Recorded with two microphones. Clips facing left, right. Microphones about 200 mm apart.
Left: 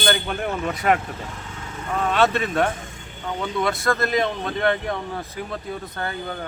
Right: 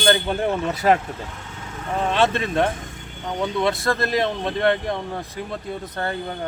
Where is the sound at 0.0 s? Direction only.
30° right (ahead or behind).